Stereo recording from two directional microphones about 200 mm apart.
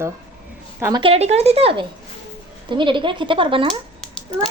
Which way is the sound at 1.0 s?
30° right (ahead or behind).